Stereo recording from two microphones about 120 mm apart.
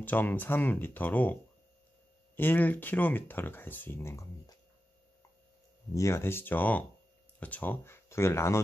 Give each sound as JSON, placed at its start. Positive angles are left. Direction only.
{"t": 0.0, "sound": "speech", "side_deg": 15}
{"t": 5.9, "sound": "speech", "side_deg": 25}